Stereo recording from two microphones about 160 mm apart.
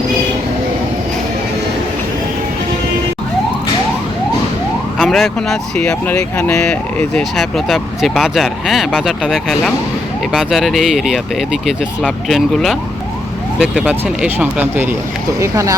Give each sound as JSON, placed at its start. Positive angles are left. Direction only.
{"t": 4.9, "sound": "speech", "side_deg": 0}